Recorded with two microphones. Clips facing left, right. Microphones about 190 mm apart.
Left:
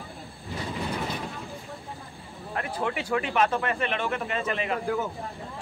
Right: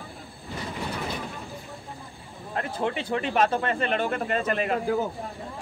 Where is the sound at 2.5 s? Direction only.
30° right (ahead or behind).